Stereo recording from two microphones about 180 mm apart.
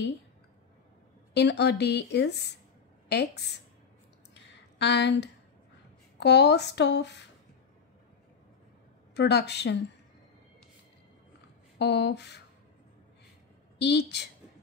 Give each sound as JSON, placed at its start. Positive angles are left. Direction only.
{"t": 1.3, "sound": "speech", "side_deg": 70}
{"t": 4.3, "sound": "a sound", "side_deg": 70}
{"t": 6.1, "sound": "speech", "side_deg": 70}
{"t": 9.1, "sound": "speech", "side_deg": 70}
{"t": 11.8, "sound": "speech", "side_deg": 70}
{"t": 13.7, "sound": "speech", "side_deg": 70}